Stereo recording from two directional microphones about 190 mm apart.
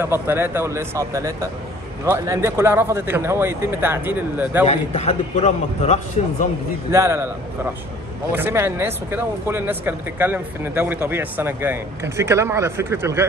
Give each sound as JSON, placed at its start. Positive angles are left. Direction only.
{"t": 0.0, "sound": "speech", "side_deg": -10}
{"t": 4.6, "sound": "a man's voice", "side_deg": 35}
{"t": 6.9, "sound": "speech", "side_deg": -15}
{"t": 8.3, "sound": "speech", "side_deg": -10}